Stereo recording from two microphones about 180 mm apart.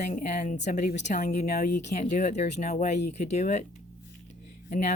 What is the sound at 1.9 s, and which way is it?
Speech, 45° left (ahead or behind).